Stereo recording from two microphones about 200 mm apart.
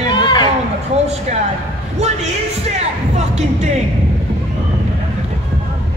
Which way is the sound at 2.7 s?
35° right (ahead or behind).